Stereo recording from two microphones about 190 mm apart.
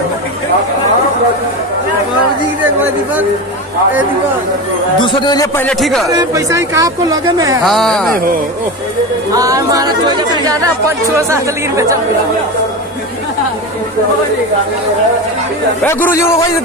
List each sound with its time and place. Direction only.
5.0 s a man's voice: 25° left (ahead or behind)
5.6 s speech: centre (ahead or behind)
6.0 s speech: 15° right (ahead or behind)
7.6 s speech: centre (ahead or behind)
9.3 s speech: 20° right (ahead or behind)
15.8 s speech: 10° left (ahead or behind)